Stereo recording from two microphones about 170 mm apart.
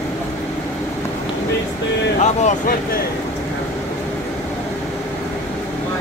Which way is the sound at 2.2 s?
45° left (ahead or behind).